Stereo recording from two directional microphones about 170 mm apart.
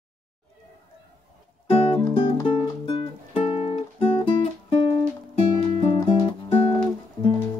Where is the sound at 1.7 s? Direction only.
35° left (ahead or behind).